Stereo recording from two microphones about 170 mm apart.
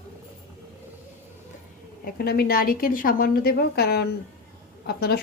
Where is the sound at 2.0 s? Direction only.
65° left (ahead or behind).